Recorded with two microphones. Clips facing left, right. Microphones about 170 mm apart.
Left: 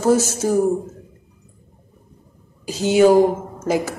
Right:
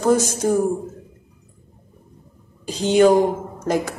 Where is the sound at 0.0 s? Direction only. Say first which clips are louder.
Left 1 dB; 5° left (ahead or behind).